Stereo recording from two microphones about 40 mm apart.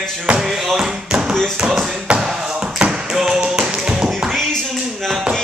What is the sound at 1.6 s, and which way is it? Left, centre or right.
Tap, centre.